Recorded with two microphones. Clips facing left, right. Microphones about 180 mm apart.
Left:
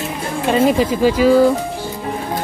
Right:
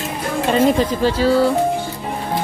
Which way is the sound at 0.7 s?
10° left (ahead or behind).